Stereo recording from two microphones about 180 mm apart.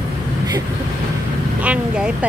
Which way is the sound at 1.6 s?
5° right (ahead or behind).